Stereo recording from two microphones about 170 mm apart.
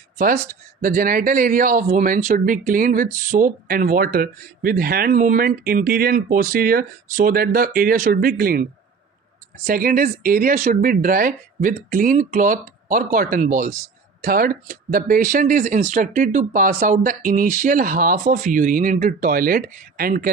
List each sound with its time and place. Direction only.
0.8 s speech: 55° right (ahead or behind)
9.6 s speech: 55° right (ahead or behind)